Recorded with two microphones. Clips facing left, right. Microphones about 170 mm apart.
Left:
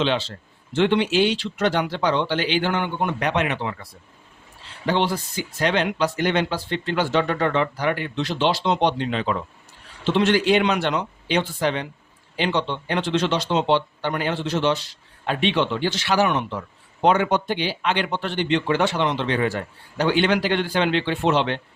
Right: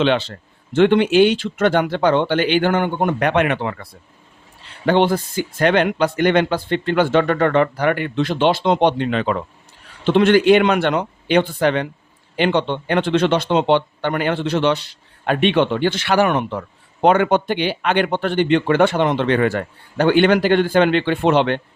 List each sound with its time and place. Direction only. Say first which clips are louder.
0.0 s speech: right 5 dB; 60° right (ahead or behind)
4.9 s speech: right 6 dB; 55° right (ahead or behind)